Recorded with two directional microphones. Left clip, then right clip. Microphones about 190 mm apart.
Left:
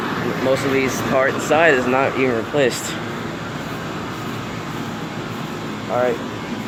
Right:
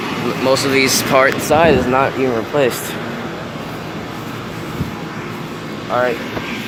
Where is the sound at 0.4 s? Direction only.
20° right (ahead or behind).